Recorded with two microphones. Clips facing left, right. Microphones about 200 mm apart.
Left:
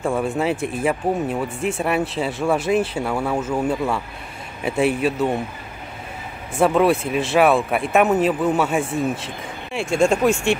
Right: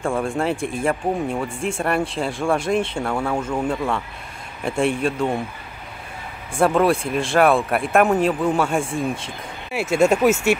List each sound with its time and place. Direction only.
0.0 s speech: 5° left (ahead or behind)
6.5 s speech: centre (ahead or behind)